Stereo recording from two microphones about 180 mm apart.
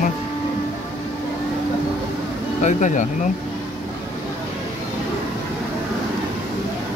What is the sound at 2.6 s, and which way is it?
Speech, 45° left (ahead or behind).